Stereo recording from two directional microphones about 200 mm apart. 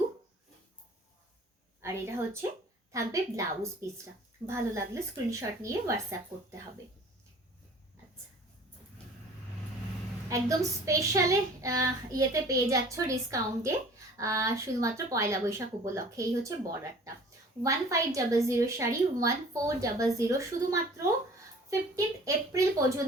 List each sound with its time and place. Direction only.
1.8 s a woman's voice: 15° right (ahead or behind)
10.2 s a woman's voice: 15° right (ahead or behind)